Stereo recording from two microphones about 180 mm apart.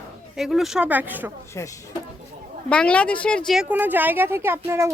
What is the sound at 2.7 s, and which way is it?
Speech, 5° left (ahead or behind).